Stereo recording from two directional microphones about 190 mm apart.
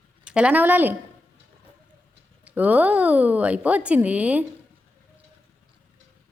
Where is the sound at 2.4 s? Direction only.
10° right (ahead or behind).